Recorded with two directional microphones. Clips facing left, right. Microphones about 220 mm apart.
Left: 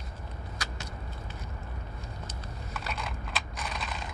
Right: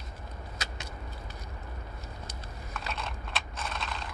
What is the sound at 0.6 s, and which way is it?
Vehicle, 25° right (ahead or behind).